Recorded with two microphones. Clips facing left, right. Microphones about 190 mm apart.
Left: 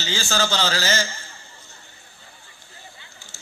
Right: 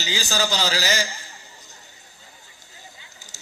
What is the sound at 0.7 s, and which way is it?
Speech, 15° right (ahead or behind).